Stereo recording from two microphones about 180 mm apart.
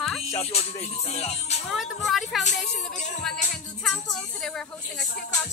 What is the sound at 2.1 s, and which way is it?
Speech, centre (ahead or behind).